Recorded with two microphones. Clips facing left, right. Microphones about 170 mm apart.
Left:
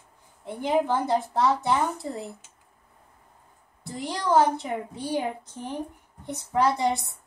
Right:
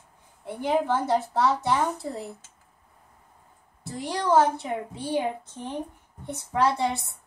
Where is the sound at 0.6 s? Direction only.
15° left (ahead or behind).